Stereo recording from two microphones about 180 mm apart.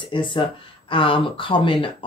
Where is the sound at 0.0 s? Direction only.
25° left (ahead or behind).